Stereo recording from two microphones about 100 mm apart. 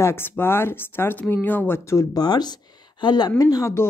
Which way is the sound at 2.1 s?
45° left (ahead or behind).